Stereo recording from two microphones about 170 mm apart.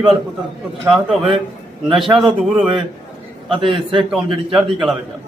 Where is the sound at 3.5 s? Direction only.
30° right (ahead or behind).